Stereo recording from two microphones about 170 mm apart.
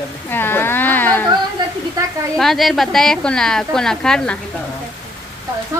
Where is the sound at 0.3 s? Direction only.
10° left (ahead or behind).